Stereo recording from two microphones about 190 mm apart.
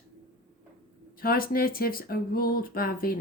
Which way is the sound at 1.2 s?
50° left (ahead or behind).